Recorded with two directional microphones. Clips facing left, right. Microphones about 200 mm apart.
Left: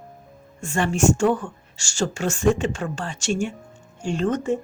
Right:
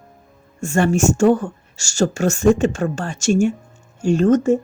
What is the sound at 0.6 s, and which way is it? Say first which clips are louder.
Speech: right 4 dB; 45° right (ahead or behind).